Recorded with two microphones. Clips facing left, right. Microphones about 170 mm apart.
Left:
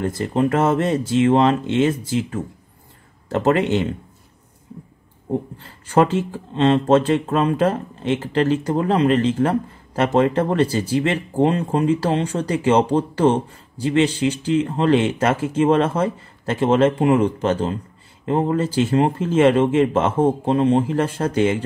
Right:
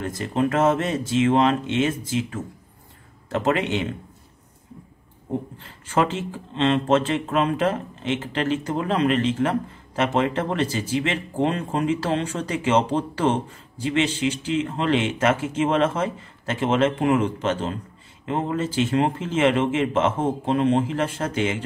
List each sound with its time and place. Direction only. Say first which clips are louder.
0.0 s speech: left 4 dB; 30° left (ahead or behind)
5.9 s speech: left 6 dB; 40° left (ahead or behind)